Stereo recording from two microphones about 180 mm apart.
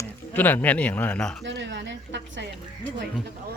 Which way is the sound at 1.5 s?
80° right.